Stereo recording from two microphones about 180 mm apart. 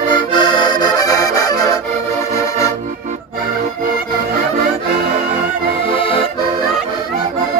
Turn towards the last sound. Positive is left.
turn(degrees=30)  # may be behind; listen again after turning